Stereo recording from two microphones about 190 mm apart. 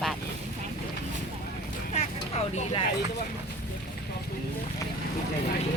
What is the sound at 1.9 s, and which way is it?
Vehicle, 35° left (ahead or behind).